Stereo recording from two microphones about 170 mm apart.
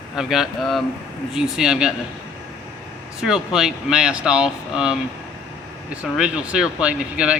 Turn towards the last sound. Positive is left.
turn(degrees=-5)  # may be behind; listen again after turning